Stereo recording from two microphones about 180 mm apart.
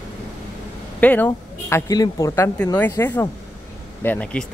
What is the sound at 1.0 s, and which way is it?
A woman's voice, 10° left (ahead or behind).